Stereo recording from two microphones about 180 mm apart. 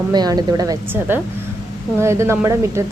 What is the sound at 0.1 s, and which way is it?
A woman's voice, 25° right (ahead or behind).